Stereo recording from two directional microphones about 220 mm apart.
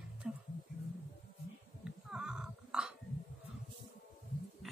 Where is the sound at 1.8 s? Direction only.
5° right (ahead or behind).